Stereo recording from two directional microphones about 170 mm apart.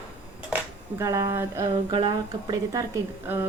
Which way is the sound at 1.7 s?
30° right (ahead or behind).